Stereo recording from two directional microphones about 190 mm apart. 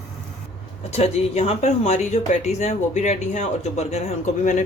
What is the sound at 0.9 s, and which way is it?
Speech, 30° left (ahead or behind).